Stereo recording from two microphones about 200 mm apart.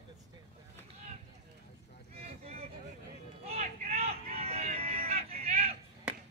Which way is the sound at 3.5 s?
35° right (ahead or behind).